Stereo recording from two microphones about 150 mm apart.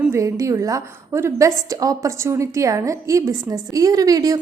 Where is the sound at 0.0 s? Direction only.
15° right (ahead or behind).